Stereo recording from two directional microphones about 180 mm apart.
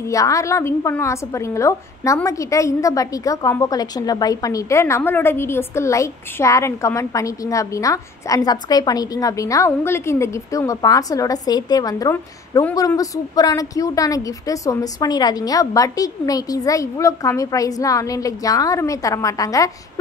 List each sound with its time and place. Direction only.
0.1 s a woman's voice: 20° left (ahead or behind)